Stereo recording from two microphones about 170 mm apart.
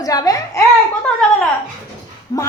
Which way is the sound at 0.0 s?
20° left (ahead or behind).